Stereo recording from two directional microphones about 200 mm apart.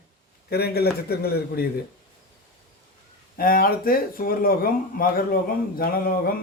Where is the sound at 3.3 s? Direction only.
45° left (ahead or behind).